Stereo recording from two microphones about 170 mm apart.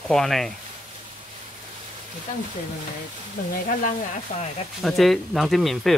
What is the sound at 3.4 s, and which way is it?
Speech, 60° left (ahead or behind).